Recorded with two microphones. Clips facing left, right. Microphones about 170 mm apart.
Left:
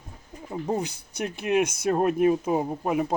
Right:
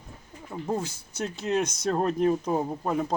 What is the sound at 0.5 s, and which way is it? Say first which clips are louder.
Speech: left 2 dB; 15° left (ahead or behind).